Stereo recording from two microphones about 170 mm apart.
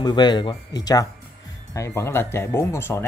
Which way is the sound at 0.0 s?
25° left (ahead or behind).